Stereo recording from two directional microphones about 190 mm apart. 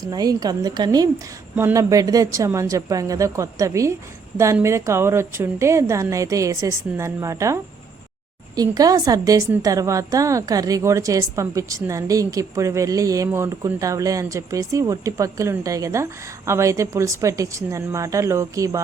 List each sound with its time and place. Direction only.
0.0 s a woman's voice: 20° right (ahead or behind)